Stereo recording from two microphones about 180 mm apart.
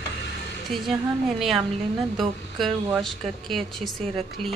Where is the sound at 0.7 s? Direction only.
Centre (ahead or behind).